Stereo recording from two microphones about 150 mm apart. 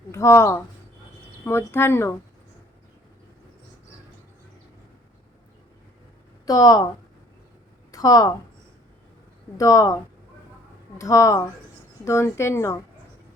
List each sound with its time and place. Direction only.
0.1 s speech: 20° left (ahead or behind)
6.4 s speech: 25° left (ahead or behind)
7.9 s a woman's voice: 25° left (ahead or behind)
9.6 s speech: 20° left (ahead or behind)
10.9 s speech: 20° left (ahead or behind)